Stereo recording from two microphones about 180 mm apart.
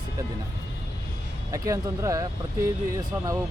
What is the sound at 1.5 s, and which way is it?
Speech, 15° right (ahead or behind).